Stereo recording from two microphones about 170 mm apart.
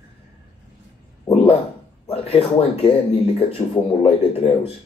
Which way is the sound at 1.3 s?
35° left (ahead or behind).